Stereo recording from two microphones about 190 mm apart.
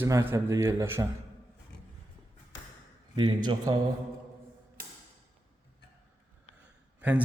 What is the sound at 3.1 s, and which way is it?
Speech, 20° right (ahead or behind).